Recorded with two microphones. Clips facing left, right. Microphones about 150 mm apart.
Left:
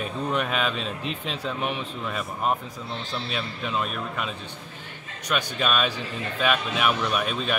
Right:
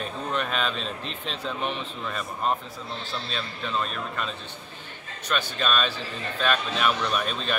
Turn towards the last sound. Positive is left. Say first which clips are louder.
# left 2 dB
turn(degrees=5)  # may be behind; listen again after turning